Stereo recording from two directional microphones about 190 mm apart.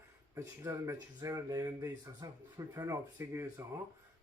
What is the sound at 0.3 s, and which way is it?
Speech, 15° right (ahead or behind).